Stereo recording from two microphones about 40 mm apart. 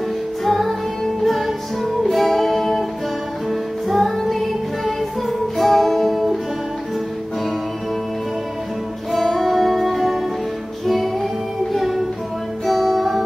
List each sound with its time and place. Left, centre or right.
0.5 s music: centre
3.9 s music: centre
9.1 s music: centre